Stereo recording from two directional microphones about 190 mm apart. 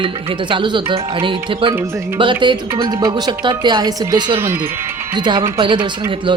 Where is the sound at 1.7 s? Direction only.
15° right (ahead or behind).